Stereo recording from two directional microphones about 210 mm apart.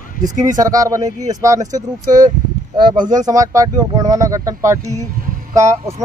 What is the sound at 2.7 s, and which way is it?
Speech, 20° right (ahead or behind).